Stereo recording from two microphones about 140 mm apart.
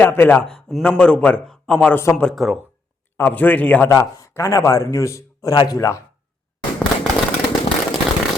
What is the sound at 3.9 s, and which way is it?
A man's voice, 20° left (ahead or behind).